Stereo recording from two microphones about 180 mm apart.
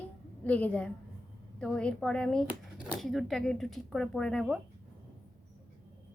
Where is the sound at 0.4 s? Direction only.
10° left (ahead or behind).